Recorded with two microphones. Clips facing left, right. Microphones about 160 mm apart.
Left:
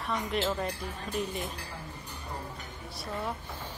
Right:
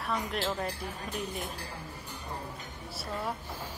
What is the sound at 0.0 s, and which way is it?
Speech, centre (ahead or behind).